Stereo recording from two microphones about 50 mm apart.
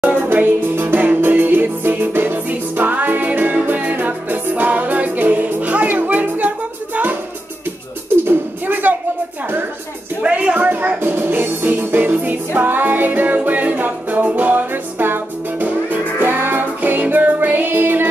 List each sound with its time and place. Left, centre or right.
0.0 s music: right
8.3 s music: right
10.2 s music: right
10.7 s music: right
11.0 s music: right